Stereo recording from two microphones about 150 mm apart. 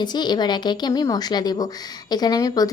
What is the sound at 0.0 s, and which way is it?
A woman's voice, 30° left (ahead or behind).